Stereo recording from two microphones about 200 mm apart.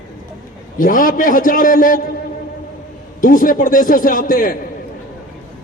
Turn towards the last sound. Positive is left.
turn(degrees=45)  # may be behind; listen again after turning